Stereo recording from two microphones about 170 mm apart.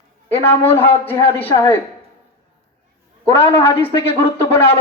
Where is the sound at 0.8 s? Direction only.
10° left (ahead or behind).